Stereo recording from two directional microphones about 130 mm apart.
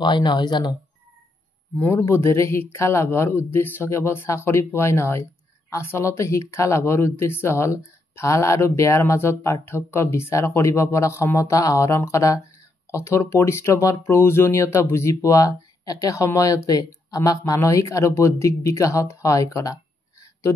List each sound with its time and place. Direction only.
0.0 s speech: 35° left (ahead or behind)
1.8 s speech: 15° left (ahead or behind)